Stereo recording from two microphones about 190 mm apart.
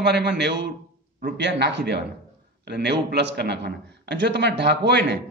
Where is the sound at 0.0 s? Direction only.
60° right (ahead or behind).